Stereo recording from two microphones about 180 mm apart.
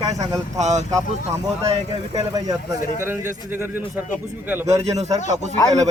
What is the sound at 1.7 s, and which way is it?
Speech, 30° right (ahead or behind).